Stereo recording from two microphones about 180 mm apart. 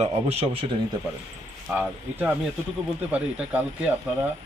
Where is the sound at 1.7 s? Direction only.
10° right (ahead or behind).